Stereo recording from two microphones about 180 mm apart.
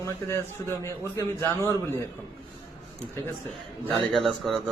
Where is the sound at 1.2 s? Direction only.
15° left (ahead or behind).